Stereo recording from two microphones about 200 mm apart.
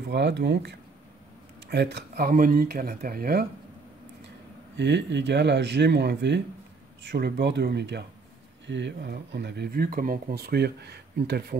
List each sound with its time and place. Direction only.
0.1 s speech: 60° right (ahead or behind)
4.7 s speech: 60° right (ahead or behind)